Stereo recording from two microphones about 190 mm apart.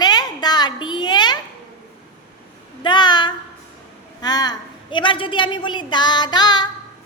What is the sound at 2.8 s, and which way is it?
A woman's voice, 25° left (ahead or behind).